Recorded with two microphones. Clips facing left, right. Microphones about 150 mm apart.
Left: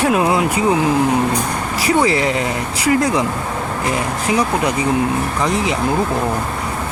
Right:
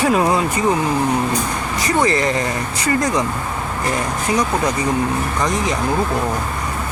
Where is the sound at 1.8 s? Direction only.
5° left (ahead or behind).